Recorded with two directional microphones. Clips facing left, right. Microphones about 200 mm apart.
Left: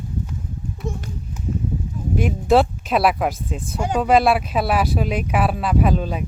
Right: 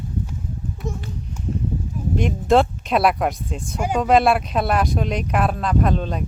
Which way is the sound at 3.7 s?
10° right (ahead or behind).